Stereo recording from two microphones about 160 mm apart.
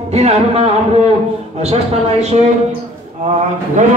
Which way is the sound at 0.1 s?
45° right (ahead or behind).